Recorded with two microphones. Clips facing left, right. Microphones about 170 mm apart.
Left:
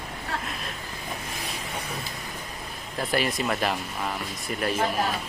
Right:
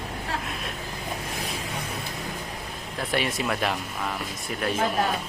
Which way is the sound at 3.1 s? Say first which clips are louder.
Left 1 dB; centre (ahead or behind).